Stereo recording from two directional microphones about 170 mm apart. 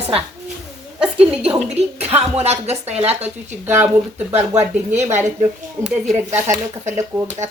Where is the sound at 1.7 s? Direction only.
40° right (ahead or behind).